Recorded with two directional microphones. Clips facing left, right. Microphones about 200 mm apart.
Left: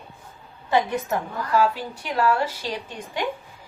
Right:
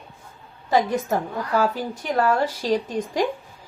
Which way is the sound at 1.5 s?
45° right (ahead or behind).